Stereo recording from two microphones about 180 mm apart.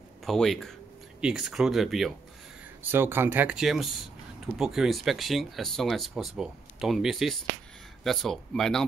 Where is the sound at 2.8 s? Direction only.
10° right (ahead or behind).